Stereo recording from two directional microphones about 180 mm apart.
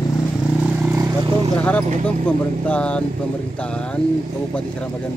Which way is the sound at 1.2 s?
25° right (ahead or behind).